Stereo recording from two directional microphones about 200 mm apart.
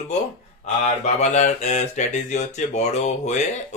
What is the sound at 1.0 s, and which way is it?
Speech, 35° left (ahead or behind).